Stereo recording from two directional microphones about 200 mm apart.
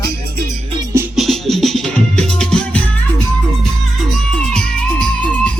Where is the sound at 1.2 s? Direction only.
Centre (ahead or behind).